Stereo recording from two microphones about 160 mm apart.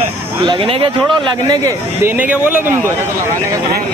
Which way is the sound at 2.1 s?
10° right (ahead or behind).